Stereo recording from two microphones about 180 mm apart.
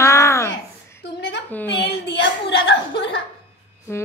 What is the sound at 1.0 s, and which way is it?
Speech, 70° left (ahead or behind).